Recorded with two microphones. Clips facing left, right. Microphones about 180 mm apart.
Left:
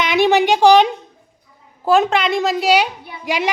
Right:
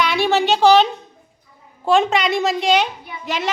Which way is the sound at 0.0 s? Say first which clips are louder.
Left 3 dB; 15° left (ahead or behind).